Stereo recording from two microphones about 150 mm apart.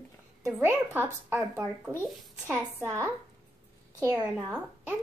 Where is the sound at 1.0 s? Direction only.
15° right (ahead or behind).